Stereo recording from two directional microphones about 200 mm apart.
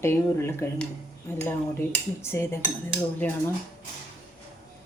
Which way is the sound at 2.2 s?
10° left (ahead or behind).